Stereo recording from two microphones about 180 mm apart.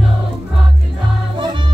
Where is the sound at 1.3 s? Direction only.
25° right (ahead or behind).